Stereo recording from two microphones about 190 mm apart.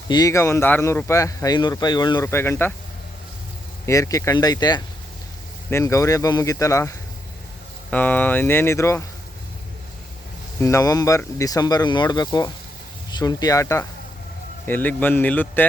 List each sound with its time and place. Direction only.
0.1 s speech: 20° left (ahead or behind)
3.8 s speech: 15° left (ahead or behind)
10.6 s speech: 15° left (ahead or behind)